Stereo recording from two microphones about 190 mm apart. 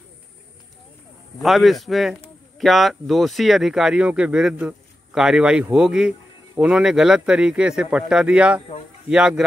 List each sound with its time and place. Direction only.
1.4 s speech: centre (ahead or behind)